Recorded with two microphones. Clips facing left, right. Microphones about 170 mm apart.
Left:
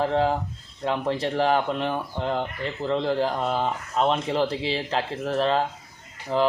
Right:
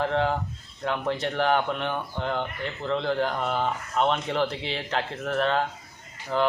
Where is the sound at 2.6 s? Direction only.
35° left (ahead or behind).